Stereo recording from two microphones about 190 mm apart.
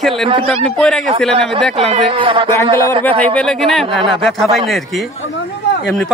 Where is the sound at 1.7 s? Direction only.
30° right (ahead or behind).